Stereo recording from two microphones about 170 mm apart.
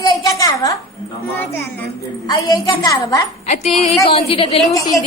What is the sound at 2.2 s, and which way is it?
Speech, 20° left (ahead or behind).